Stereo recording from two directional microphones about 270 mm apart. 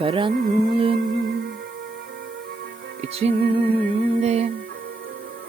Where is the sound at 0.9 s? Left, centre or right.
Right.